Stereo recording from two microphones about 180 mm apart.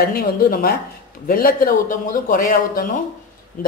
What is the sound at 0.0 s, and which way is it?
A man's voice, 55° left (ahead or behind).